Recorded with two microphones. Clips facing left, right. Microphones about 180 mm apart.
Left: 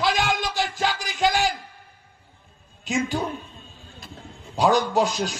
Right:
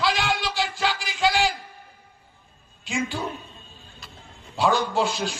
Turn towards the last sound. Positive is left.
turn(degrees=40)  # may be behind; listen again after turning